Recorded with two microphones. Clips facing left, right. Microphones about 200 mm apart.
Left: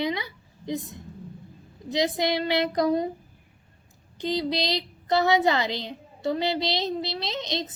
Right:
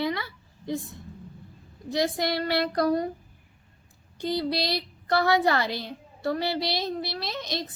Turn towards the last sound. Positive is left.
turn(degrees=20)  # may be behind; listen again after turning